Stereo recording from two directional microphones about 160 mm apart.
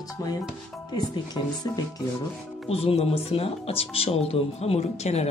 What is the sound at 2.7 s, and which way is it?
Speech, 40° left (ahead or behind).